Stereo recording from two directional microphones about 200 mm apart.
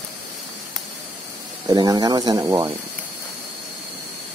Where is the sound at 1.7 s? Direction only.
20° right (ahead or behind).